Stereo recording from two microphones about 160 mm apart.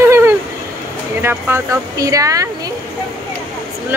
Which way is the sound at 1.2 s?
15° right (ahead or behind).